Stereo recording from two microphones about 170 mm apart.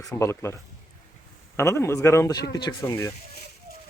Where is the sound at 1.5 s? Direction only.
15° left (ahead or behind).